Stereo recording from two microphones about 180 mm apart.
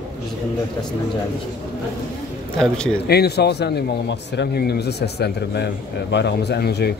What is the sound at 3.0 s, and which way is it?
Speech, 65° left (ahead or behind).